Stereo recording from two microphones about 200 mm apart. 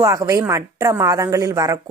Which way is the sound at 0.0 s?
15° right (ahead or behind).